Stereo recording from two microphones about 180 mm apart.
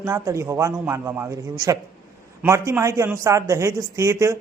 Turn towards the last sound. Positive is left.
turn(degrees=-15)  # may be behind; listen again after turning